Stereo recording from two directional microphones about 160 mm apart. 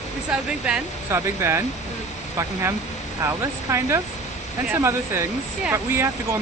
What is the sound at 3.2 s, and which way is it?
Speech, 15° right (ahead or behind).